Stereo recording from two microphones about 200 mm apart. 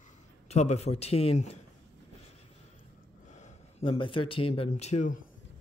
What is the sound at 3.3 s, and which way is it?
Speech, 30° left (ahead or behind).